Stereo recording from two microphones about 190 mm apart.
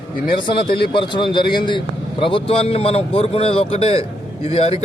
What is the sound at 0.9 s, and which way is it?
A man's voice, 25° left (ahead or behind).